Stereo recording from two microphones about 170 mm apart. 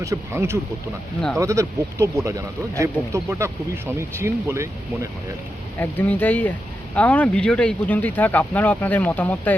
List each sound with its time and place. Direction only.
0.0 s speech: 15° right (ahead or behind)
5.8 s speech: 10° left (ahead or behind)